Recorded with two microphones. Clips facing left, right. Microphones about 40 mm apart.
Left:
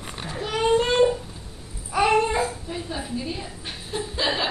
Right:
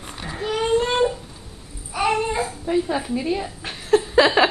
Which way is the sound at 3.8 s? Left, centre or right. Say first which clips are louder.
Right 10 dB; right.